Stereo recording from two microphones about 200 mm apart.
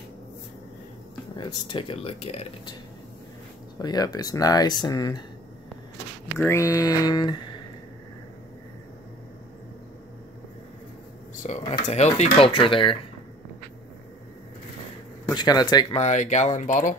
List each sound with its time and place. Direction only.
1.3 s speech: 20° left (ahead or behind)
3.8 s speech: 20° left (ahead or behind)
6.3 s speech: 15° left (ahead or behind)
11.4 s speech: 35° left (ahead or behind)
15.2 s speech: 20° left (ahead or behind)
16.0 s speech: 35° left (ahead or behind)